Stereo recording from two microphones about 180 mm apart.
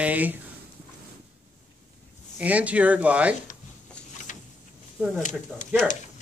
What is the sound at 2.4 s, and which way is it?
Speech, 10° right (ahead or behind).